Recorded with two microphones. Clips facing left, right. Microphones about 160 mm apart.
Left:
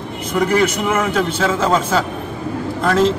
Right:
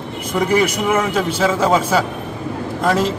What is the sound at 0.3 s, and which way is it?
A man's voice, 10° right (ahead or behind).